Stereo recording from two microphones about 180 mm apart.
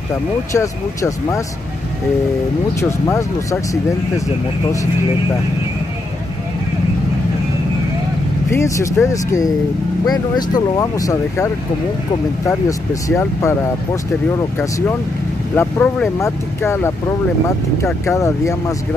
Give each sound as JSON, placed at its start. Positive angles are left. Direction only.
{"t": 0.5, "sound": "speech", "side_deg": 15}
{"t": 2.8, "sound": "speech", "side_deg": 15}
{"t": 8.5, "sound": "speech", "side_deg": 15}
{"t": 15.5, "sound": "speech", "side_deg": 10}
{"t": 18.0, "sound": "speech", "side_deg": 15}